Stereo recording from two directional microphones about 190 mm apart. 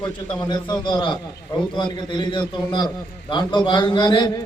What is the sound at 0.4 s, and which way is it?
A man's voice, 20° left (ahead or behind).